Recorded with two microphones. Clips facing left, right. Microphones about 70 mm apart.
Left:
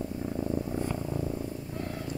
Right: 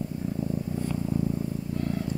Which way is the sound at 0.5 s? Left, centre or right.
Left.